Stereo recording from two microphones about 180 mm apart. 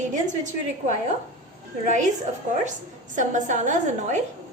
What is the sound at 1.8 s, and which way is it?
Speech, 45° right (ahead or behind).